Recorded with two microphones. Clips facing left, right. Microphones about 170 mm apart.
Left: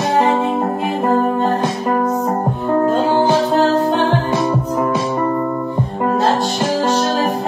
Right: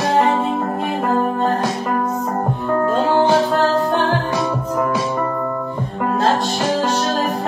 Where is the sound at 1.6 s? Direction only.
25° left (ahead or behind).